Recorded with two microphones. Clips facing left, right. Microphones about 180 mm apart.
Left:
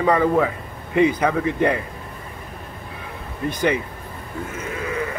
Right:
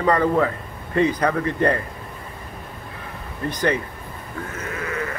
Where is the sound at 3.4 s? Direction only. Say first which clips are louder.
Left 1 dB; 15° left (ahead or behind).